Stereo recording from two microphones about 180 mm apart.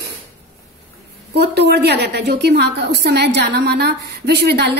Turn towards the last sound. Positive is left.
turn(degrees=-65)  # may be behind; listen again after turning